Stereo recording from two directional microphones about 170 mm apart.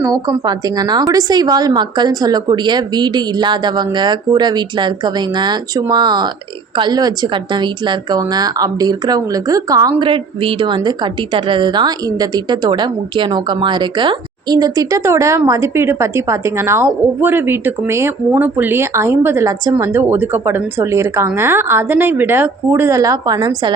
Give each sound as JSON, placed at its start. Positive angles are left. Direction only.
{"t": 0.0, "sound": "a woman's voice", "side_deg": -20}